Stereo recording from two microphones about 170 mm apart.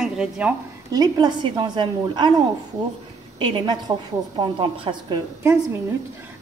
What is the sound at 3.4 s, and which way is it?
A woman's voice, 25° right (ahead or behind).